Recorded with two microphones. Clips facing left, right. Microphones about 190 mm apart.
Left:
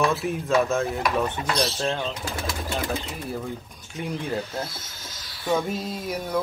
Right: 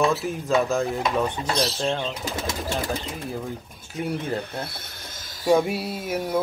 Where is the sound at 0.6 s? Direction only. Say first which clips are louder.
Even; centre (ahead or behind).